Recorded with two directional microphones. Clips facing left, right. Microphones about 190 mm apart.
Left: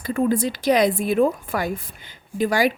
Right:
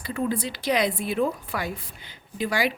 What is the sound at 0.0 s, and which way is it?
Speech, 50° left (ahead or behind).